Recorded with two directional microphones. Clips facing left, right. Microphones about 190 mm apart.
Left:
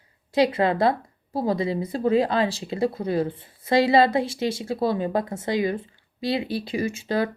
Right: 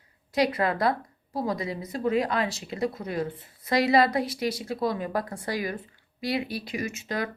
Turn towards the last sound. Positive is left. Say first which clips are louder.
# left 6 dB
turn(degrees=30)  # may be behind; listen again after turning